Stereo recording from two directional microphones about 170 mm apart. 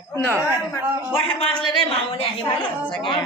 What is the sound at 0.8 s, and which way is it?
Speech, 10° right (ahead or behind).